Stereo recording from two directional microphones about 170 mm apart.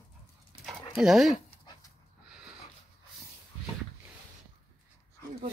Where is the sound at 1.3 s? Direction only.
25° left (ahead or behind).